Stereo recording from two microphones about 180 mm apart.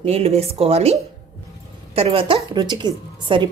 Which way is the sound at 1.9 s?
30° right (ahead or behind).